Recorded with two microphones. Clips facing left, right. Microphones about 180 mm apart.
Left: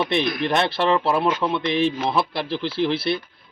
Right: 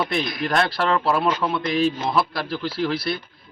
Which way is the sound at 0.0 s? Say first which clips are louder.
Left 2 dB; 25° left (ahead or behind).